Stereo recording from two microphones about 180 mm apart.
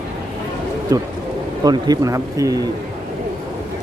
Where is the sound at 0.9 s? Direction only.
20° right (ahead or behind).